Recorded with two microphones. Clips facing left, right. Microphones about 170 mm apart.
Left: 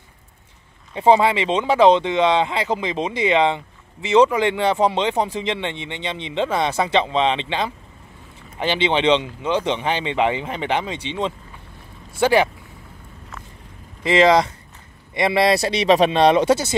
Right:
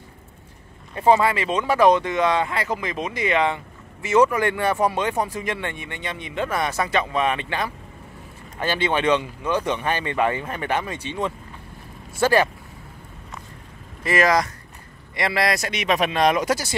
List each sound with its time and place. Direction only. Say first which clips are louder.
0.9 s speech: left 2 dB; 25° left (ahead or behind)
14.0 s speech: left 5 dB; 25° left (ahead or behind)